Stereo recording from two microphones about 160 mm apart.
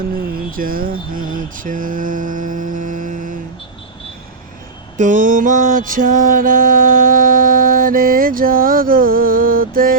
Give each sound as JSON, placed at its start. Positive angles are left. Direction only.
{"t": 0.5, "sound": "mantra", "side_deg": -60}
{"t": 4.9, "sound": "mantra", "side_deg": -50}